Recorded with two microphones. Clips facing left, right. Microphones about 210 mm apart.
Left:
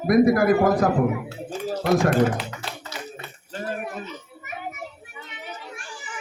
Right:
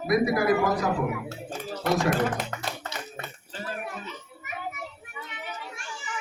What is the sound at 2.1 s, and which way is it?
Speech, 45° right (ahead or behind).